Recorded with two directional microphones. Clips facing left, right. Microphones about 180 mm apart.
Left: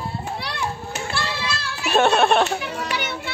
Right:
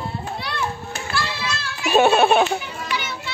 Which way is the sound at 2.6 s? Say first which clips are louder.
Left 2 dB; 70° left (ahead or behind).